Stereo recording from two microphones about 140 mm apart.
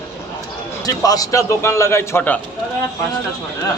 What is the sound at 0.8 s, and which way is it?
A man's voice, 25° left (ahead or behind).